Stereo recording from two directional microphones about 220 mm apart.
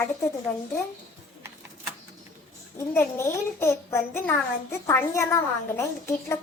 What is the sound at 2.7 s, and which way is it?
A child's voice, 10° left (ahead or behind).